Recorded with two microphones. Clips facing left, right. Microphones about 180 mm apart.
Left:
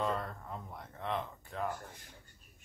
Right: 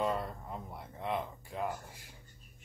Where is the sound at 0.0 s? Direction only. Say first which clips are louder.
Right 2 dB; 15° right (ahead or behind).